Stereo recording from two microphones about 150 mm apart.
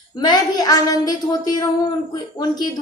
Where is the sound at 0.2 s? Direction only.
25° left (ahead or behind).